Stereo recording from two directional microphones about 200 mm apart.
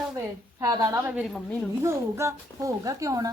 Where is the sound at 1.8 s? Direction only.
15° right (ahead or behind).